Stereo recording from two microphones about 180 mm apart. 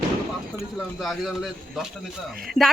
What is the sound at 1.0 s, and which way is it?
Speech, centre (ahead or behind).